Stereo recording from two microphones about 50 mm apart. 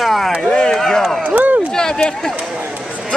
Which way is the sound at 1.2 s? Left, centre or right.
Right.